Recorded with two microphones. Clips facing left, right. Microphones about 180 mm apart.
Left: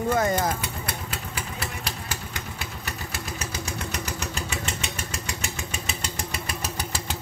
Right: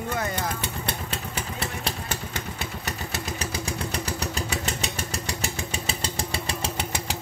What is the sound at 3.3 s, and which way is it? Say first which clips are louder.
Vehicle: right 2 dB; 30° right (ahead or behind).